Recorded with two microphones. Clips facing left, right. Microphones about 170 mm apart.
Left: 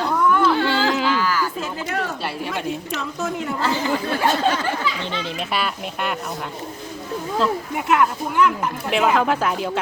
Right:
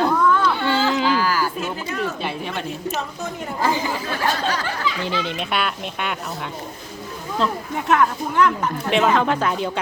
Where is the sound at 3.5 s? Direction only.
15° right (ahead or behind).